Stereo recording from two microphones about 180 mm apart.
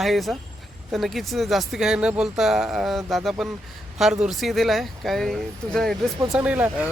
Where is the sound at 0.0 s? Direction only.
Centre (ahead or behind).